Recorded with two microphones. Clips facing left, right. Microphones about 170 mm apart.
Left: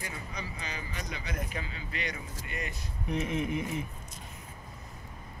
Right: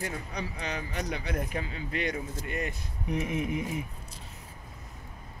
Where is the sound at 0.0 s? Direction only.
65° right (ahead or behind).